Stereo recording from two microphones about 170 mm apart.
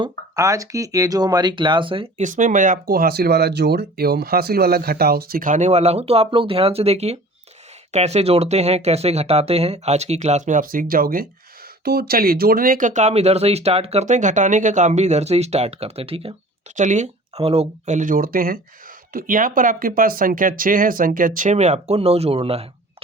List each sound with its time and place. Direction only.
0.0 s speech: 20° right (ahead or behind)
2.2 s speech: 50° right (ahead or behind); by 16.3 s 35° right (ahead or behind)
16.7 s speech: 45° right (ahead or behind)